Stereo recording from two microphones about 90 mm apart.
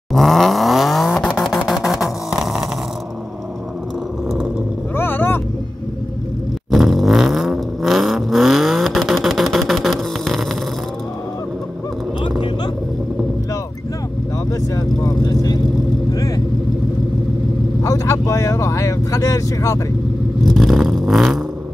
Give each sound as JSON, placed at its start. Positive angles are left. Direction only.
{"t": 0.1, "sound": "vehicle", "side_deg": 0}
{"t": 4.9, "sound": "vehicle", "side_deg": 25}
{"t": 6.7, "sound": "vehicle", "side_deg": 0}
{"t": 14.5, "sound": "vehicle", "side_deg": 45}
{"t": 17.8, "sound": "vehicle", "side_deg": 35}
{"t": 20.4, "sound": "vehicle", "side_deg": 0}